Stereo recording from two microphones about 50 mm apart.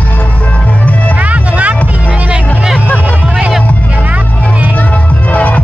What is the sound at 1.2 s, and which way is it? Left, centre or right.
Music, right.